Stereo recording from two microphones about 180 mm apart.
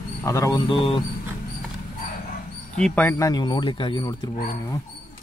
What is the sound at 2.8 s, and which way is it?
Speech, 10° left (ahead or behind).